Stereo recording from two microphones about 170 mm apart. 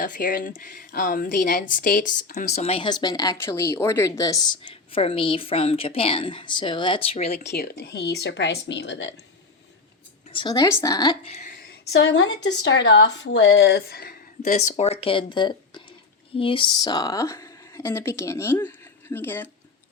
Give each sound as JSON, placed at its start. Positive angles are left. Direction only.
{"t": 0.0, "sound": "speech", "side_deg": 55}
{"t": 7.5, "sound": "speech", "side_deg": 70}
{"t": 10.2, "sound": "a woman's voice", "side_deg": 30}
{"t": 11.3, "sound": "a woman's voice", "side_deg": 40}
{"t": 11.6, "sound": "a woman's voice", "side_deg": 80}